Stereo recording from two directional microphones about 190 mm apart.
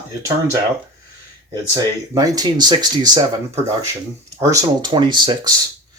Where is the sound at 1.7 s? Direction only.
20° right (ahead or behind).